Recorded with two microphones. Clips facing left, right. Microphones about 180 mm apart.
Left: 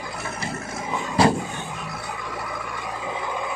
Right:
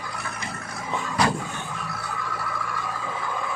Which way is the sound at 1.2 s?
30° left (ahead or behind).